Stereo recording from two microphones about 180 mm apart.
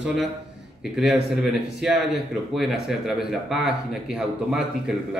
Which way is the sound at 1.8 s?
Centre (ahead or behind).